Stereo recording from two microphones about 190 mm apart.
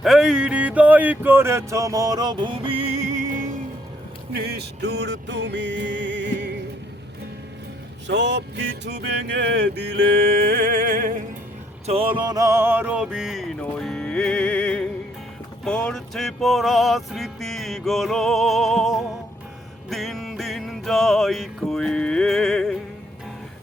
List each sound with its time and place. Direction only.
0.0 s speech: centre (ahead or behind); by 3.4 s 40° right (ahead or behind)
4.3 s music: 60° right (ahead or behind)
8.0 s music: 65° right (ahead or behind); by 11.2 s 45° right (ahead or behind)
11.9 s a sound: 30° right (ahead or behind); by 14.8 s 5° left (ahead or behind)
15.6 s music: 5° left (ahead or behind)